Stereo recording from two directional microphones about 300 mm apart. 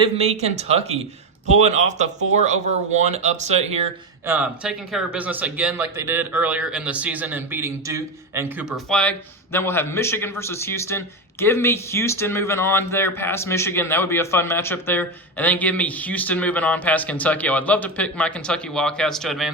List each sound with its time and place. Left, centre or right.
0.0 s speech: right
4.3 s speech: centre